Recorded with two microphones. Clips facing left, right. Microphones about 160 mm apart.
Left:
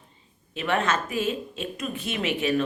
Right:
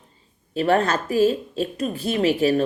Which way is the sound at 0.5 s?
40° right (ahead or behind).